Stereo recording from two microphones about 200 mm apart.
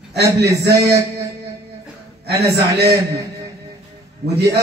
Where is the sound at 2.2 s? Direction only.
55° right (ahead or behind).